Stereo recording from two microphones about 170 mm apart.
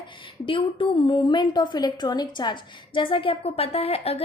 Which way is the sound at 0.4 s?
30° left (ahead or behind).